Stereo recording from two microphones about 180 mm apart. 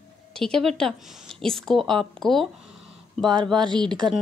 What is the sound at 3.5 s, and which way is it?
Speech, 25° right (ahead or behind).